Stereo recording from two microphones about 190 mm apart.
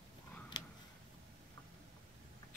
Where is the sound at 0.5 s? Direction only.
20° left (ahead or behind).